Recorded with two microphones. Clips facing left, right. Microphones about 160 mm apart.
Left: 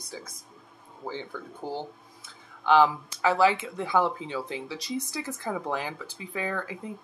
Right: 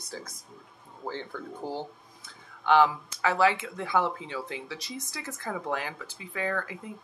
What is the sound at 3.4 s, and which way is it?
Speech, 25° left (ahead or behind).